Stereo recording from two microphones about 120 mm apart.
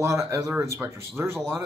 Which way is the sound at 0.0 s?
25° right (ahead or behind).